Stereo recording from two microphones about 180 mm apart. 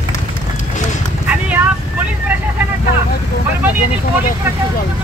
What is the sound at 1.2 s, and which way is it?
Vehicle, 10° right (ahead or behind).